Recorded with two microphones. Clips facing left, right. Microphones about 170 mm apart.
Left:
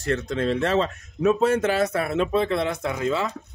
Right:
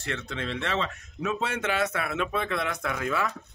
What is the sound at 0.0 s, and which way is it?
Speech, 40° left (ahead or behind).